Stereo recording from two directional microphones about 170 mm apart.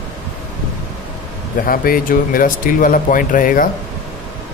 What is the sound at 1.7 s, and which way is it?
Speech, 55° left (ahead or behind).